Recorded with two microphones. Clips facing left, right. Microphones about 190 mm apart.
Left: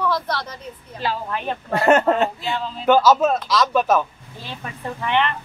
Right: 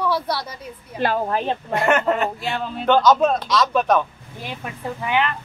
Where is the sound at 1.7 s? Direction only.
30° left (ahead or behind).